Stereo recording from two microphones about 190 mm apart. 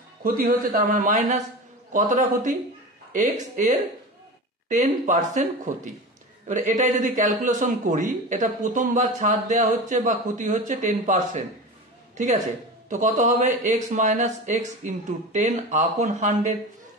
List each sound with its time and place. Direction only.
0.2 s a man's voice: 50° right (ahead or behind)
12.9 s a man's voice: 40° right (ahead or behind)